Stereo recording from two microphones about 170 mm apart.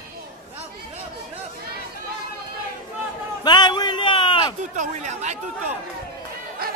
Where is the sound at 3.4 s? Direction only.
25° left (ahead or behind).